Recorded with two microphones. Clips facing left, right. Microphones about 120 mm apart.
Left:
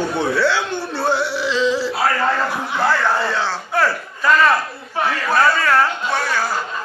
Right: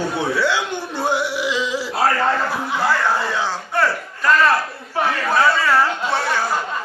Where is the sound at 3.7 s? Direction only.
Centre (ahead or behind).